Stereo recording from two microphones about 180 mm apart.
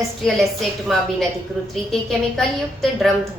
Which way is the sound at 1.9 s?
Centre (ahead or behind).